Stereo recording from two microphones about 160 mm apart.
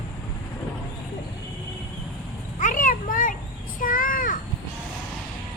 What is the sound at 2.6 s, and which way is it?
Children playing, 55° left (ahead or behind).